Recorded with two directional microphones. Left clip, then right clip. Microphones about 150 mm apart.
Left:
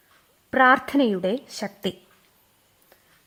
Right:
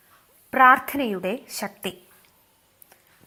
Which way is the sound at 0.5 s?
40° left (ahead or behind).